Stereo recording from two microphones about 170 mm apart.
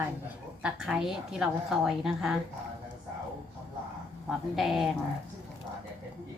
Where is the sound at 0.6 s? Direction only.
5° right (ahead or behind).